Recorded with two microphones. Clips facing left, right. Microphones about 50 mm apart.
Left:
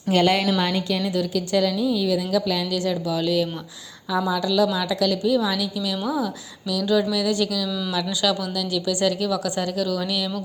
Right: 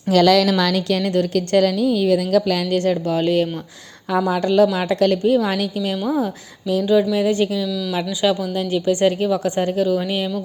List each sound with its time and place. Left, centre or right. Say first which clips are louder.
0.2 s a woman's voice: right 6 dB; right
6.8 s speech: right 4 dB; right